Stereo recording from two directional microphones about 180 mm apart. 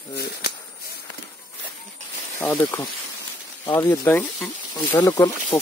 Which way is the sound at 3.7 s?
15° left (ahead or behind).